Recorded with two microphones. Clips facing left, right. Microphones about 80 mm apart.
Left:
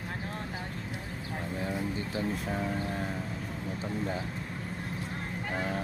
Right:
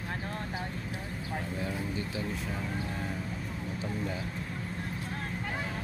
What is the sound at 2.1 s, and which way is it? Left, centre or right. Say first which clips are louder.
Speech: left 3 dB; left.